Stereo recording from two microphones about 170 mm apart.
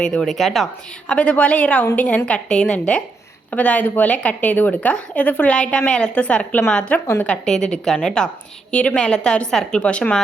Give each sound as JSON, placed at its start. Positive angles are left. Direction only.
{"t": 0.0, "sound": "a woman's voice", "side_deg": 5}